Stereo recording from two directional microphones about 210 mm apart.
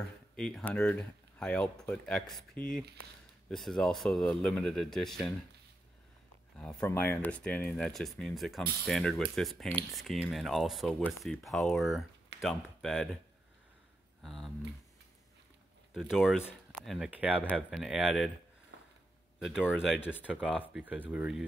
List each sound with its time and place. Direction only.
0.4 s speech: 5° left (ahead or behind)
6.6 s speech: 5° left (ahead or behind)
14.2 s speech: centre (ahead or behind)
15.9 s speech: centre (ahead or behind)
18.7 s sniff: 60° right (ahead or behind)
19.4 s speech: 5° right (ahead or behind)
20.0 s speech: 10° left (ahead or behind)
20.2 s speech: 5° right (ahead or behind)
20.5 s speech: 5° left (ahead or behind)
20.8 s speech: 5° right (ahead or behind)